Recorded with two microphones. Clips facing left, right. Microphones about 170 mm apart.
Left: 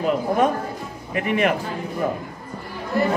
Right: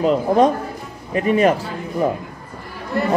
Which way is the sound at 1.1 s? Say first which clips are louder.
Right 5 dB; 30° right (ahead or behind).